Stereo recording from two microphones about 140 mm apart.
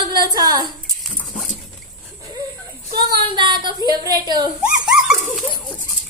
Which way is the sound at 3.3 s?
35° right (ahead or behind).